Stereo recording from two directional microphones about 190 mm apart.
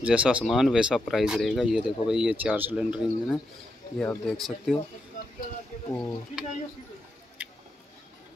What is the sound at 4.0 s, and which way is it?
Speech, 5° left (ahead or behind).